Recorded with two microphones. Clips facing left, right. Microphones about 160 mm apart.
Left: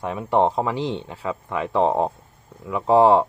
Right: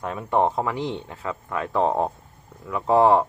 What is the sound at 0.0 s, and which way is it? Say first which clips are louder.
A man's voice: left 2 dB; 15° left (ahead or behind).